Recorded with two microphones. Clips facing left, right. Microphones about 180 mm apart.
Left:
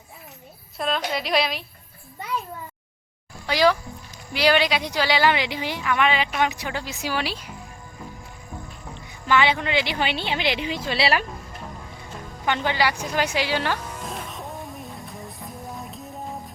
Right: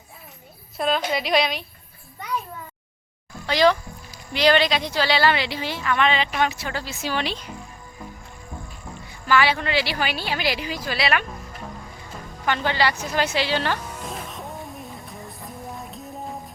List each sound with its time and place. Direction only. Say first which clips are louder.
0.8 s a woman's voice: right 3 dB; centre (ahead or behind)
3.4 s a child's voice: right 1 dB; 10° left (ahead or behind)
9.2 s a woman's voice: even; 20° left (ahead or behind)
12.5 s a woman's voice: even; 15° left (ahead or behind)
13.7 s music: even; 5° right (ahead or behind)